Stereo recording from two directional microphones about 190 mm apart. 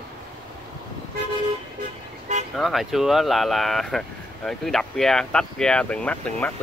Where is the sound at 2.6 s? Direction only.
Centre (ahead or behind).